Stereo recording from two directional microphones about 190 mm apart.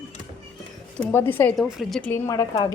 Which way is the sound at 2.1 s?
15° left (ahead or behind).